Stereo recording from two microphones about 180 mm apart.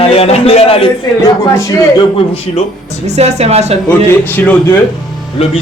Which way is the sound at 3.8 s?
10° left (ahead or behind).